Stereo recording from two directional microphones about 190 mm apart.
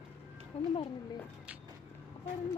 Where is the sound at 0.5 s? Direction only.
30° left (ahead or behind).